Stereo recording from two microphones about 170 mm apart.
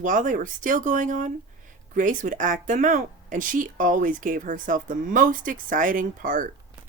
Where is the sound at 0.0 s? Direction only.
50° right (ahead or behind).